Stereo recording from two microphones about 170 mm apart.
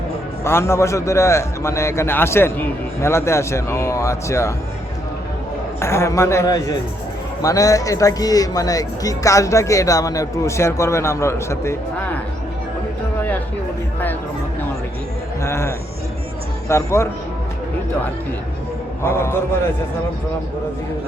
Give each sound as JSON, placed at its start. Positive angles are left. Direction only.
{"t": 0.4, "sound": "a man's voice", "side_deg": 15}
{"t": 5.8, "sound": "a man's voice", "side_deg": 15}
{"t": 15.4, "sound": "a man's voice", "side_deg": 15}
{"t": 19.0, "sound": "a man's voice", "side_deg": 15}